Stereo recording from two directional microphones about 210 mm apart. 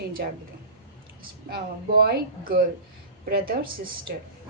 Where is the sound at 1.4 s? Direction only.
45° right (ahead or behind).